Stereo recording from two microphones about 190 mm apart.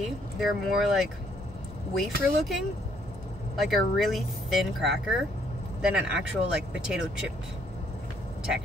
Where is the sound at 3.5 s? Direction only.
Centre (ahead or behind).